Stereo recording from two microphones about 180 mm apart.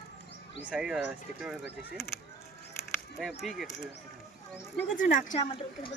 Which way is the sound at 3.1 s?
Centre (ahead or behind).